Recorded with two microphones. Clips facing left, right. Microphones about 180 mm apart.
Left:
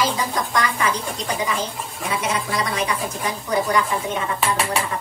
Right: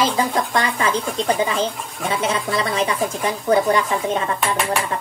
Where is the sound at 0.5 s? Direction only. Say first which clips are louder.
Right 2 dB; 30° right (ahead or behind).